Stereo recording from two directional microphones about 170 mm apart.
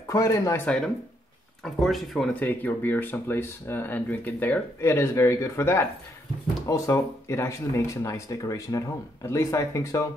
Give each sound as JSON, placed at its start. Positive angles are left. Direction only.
{"t": 0.1, "sound": "speech", "side_deg": 15}
{"t": 1.6, "sound": "speech", "side_deg": 0}